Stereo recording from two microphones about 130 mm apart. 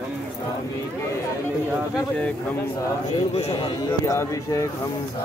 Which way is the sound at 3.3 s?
45° left (ahead or behind).